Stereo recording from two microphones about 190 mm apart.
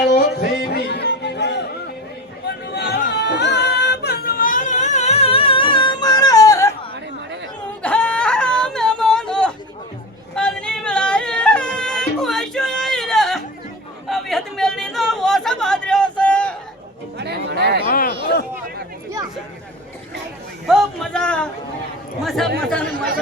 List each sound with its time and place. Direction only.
0.0 s music: 60° left (ahead or behind)
2.5 s chatter: 60° left (ahead or behind)
3.1 s child singing: 60° left (ahead or behind); by 6.7 s 15° left (ahead or behind)
7.8 s a sound: 5° left (ahead or behind)
10.3 s yodeling: 5° left (ahead or behind)
14.1 s chatter: centre (ahead or behind)
17.2 s music: 60° right (ahead or behind)
17.8 s a sound: 50° left (ahead or behind)
20.7 s a sound: centre (ahead or behind)
22.2 s chatter: centre (ahead or behind)